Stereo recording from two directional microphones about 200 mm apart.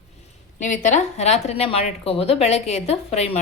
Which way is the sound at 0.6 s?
40° left (ahead or behind).